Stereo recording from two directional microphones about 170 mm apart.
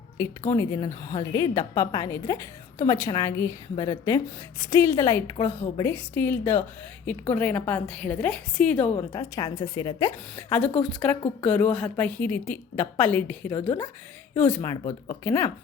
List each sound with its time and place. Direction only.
0.2 s a woman's voice: 15° left (ahead or behind)
9.1 s a woman's voice: 20° left (ahead or behind)